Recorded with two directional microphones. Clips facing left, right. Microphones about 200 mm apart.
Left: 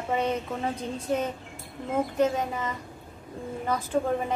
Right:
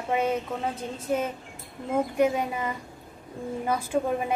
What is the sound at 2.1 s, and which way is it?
A woman's voice, 10° right (ahead or behind).